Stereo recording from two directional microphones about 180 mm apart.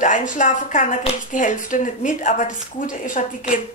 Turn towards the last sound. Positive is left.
turn(degrees=45)  # may be behind; listen again after turning